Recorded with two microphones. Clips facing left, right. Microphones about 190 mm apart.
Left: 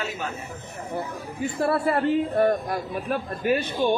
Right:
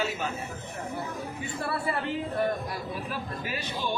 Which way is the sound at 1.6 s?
55° left (ahead or behind).